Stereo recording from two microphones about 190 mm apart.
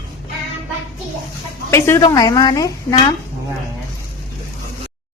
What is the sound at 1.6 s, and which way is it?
Speech, 15° left (ahead or behind).